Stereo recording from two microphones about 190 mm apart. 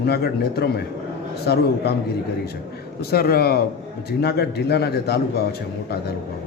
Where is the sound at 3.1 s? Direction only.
55° left (ahead or behind).